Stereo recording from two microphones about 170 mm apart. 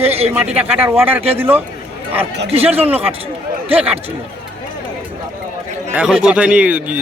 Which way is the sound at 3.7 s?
10° right (ahead or behind).